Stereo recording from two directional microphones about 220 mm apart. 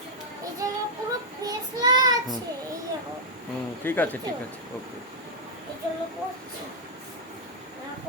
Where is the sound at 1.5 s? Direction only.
20° right (ahead or behind).